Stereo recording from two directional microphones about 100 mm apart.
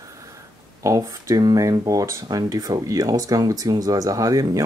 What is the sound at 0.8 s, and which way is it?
Speech, 30° right (ahead or behind).